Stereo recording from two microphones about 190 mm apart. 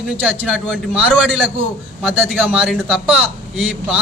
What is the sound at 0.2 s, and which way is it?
Speech, 10° right (ahead or behind).